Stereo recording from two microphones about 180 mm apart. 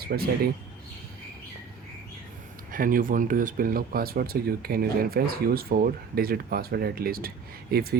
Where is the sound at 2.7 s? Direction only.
50° right (ahead or behind).